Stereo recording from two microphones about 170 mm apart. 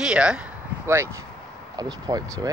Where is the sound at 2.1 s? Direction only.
20° right (ahead or behind).